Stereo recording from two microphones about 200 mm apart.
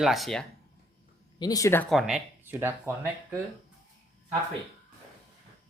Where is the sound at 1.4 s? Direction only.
15° left (ahead or behind).